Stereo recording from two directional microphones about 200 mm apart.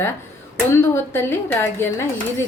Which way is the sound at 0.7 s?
10° left (ahead or behind).